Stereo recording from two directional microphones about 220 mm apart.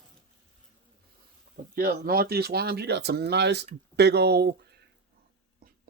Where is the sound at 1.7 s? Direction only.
45° right (ahead or behind).